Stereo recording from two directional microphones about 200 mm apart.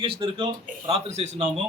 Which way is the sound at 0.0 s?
25° right (ahead or behind).